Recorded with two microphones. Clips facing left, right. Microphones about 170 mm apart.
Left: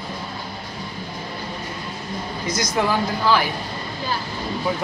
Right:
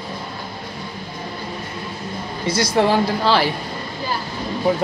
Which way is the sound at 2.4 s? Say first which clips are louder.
Right 5 dB; 30° right (ahead or behind).